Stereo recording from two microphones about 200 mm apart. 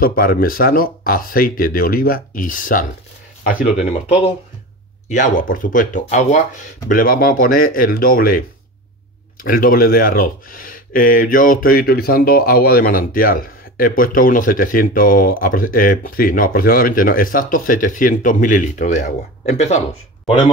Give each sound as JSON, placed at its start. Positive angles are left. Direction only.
{"t": 0.0, "sound": "speech", "side_deg": 45}
{"t": 5.0, "sound": "speech", "side_deg": 40}